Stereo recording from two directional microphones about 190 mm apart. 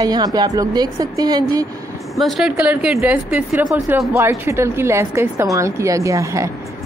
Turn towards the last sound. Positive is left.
turn(degrees=-15)  # may be behind; listen again after turning